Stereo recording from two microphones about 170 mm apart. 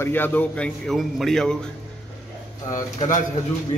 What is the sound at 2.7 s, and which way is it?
Speech, 50° left (ahead or behind).